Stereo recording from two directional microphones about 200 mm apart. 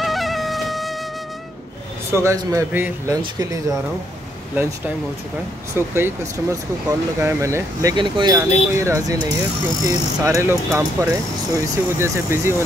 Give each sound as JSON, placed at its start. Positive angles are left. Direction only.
{"t": 0.0, "sound": "wind instrument", "side_deg": 0}
{"t": 2.1, "sound": "speech", "side_deg": -15}
{"t": 4.6, "sound": "speech", "side_deg": -10}